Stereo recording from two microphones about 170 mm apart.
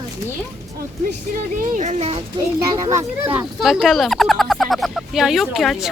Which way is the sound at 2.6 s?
20° right (ahead or behind).